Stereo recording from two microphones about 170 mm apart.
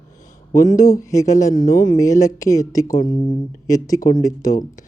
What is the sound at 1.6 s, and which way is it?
Speech, 55° left (ahead or behind).